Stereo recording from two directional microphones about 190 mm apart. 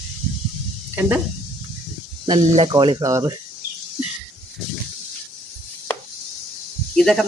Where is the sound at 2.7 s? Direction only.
25° right (ahead or behind).